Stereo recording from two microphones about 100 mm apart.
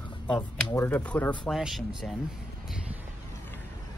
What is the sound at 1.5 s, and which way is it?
Speech, centre (ahead or behind).